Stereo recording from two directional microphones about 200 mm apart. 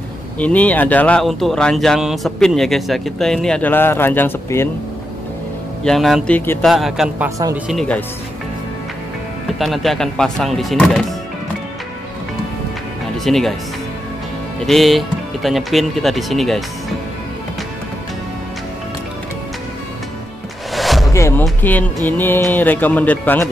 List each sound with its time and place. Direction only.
0.4 s speech: 5° left (ahead or behind)
5.9 s speech: centre (ahead or behind)
6.6 s speech: centre (ahead or behind)
7.2 s speech: 15° right (ahead or behind)
7.6 s speech: centre (ahead or behind)
9.6 s speech: centre (ahead or behind)
13.2 s speech: centre (ahead or behind)
14.7 s speech: centre (ahead or behind)
20.7 s music: centre (ahead or behind)
21.1 s music: 15° left (ahead or behind)
22.0 s speech: 10° left (ahead or behind)